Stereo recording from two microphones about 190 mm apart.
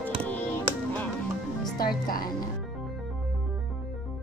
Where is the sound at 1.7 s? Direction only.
50° left (ahead or behind).